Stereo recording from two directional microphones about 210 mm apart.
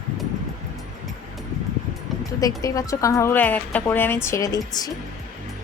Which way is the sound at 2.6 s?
15° left (ahead or behind).